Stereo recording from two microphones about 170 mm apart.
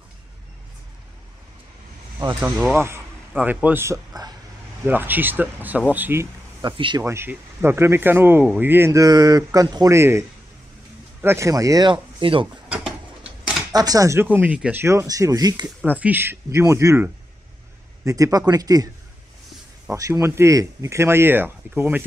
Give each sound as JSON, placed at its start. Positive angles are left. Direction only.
{"t": 2.4, "sound": "speech", "side_deg": -15}
{"t": 6.6, "sound": "speech", "side_deg": -30}
{"t": 7.0, "sound": "speech", "side_deg": -15}
{"t": 12.6, "sound": "a sound", "side_deg": -5}
{"t": 13.7, "sound": "speech", "side_deg": -20}
{"t": 15.8, "sound": "speech", "side_deg": -10}
{"t": 19.9, "sound": "speech", "side_deg": -15}